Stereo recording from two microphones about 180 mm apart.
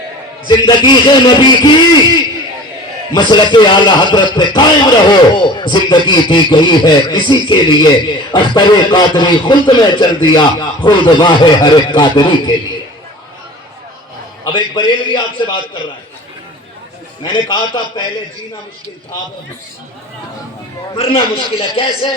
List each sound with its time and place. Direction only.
0.4 s a man's voice: 25° left (ahead or behind)
3.1 s a man's voice: 25° left (ahead or behind)
14.4 s a man's voice: 25° left (ahead or behind)
17.2 s a man's voice: 25° left (ahead or behind)
20.9 s a man's voice: 30° left (ahead or behind)